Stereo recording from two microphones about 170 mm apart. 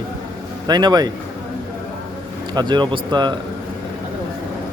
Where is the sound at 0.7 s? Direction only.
25° right (ahead or behind).